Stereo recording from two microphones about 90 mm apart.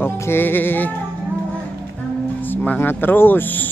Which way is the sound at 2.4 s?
20° left (ahead or behind).